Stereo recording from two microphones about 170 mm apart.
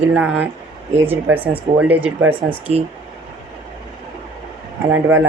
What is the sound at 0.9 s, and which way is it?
Speech, 10° right (ahead or behind).